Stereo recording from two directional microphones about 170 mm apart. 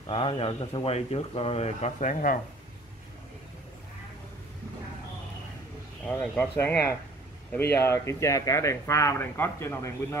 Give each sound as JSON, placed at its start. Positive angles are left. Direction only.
{"t": 0.0, "sound": "speech", "side_deg": 30}
{"t": 6.0, "sound": "speech", "side_deg": 5}